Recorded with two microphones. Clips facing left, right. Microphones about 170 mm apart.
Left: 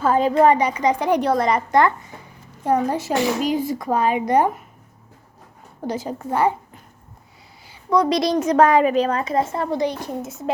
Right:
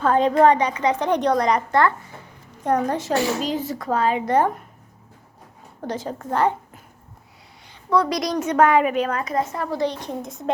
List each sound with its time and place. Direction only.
0.0 s a woman's voice: 5° left (ahead or behind)
2.6 s a woman's voice: 10° left (ahead or behind)
5.9 s a woman's voice: 10° left (ahead or behind)
7.7 s a sound: 15° left (ahead or behind)
8.1 s a woman's voice: 30° left (ahead or behind); by 10.5 s 5° left (ahead or behind)